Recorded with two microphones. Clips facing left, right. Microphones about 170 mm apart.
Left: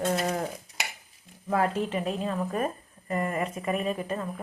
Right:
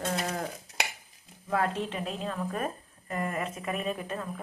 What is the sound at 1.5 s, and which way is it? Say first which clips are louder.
A woman's voice: left 3 dB; 5° left (ahead or behind).